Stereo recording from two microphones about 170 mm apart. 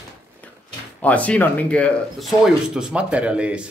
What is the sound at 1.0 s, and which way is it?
Speech, 10° left (ahead or behind).